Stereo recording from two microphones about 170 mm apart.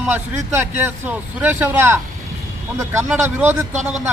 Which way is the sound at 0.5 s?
10° right (ahead or behind).